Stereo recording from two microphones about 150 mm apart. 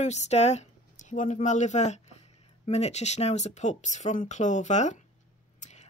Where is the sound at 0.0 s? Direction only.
50° left (ahead or behind).